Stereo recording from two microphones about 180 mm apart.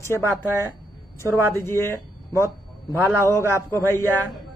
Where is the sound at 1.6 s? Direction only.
15° left (ahead or behind).